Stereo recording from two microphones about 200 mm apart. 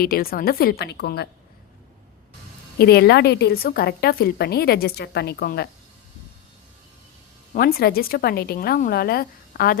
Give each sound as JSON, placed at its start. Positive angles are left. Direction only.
{"t": 0.0, "sound": "a woman's voice", "side_deg": 50}
{"t": 2.7, "sound": "a woman's voice", "side_deg": 50}
{"t": 7.5, "sound": "a woman's voice", "side_deg": 50}